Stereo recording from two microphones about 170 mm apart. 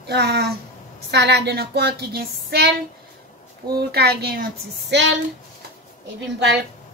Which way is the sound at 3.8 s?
70° right (ahead or behind).